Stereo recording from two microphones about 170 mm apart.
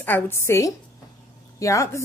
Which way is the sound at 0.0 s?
15° left (ahead or behind).